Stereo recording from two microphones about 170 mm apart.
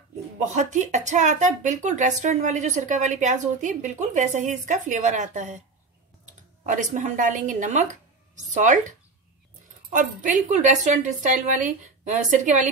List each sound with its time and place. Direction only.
0.4 s speech: 45° right (ahead or behind)
6.6 s speech: 50° right (ahead or behind)
9.9 s speech: 50° right (ahead or behind)